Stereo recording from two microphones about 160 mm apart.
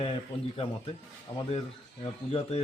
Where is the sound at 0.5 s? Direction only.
35° left (ahead or behind).